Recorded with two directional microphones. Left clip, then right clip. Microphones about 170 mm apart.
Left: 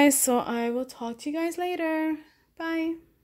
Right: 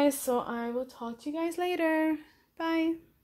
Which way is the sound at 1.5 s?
10° left (ahead or behind).